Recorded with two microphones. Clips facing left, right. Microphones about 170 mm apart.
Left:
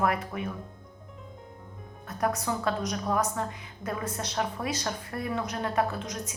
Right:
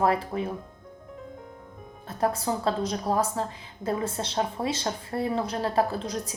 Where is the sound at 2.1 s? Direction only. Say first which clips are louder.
Right 2 dB; 30° right (ahead or behind).